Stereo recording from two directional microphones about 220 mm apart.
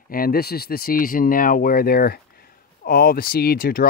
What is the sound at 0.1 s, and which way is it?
Speech, 40° left (ahead or behind).